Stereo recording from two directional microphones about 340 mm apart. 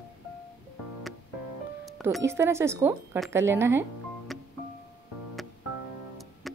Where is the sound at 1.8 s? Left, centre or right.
Centre.